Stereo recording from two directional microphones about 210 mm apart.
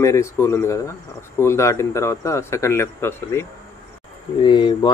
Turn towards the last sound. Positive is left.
turn(degrees=20)  # may be behind; listen again after turning